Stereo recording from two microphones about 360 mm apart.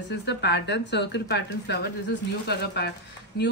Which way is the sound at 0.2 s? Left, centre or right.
Left.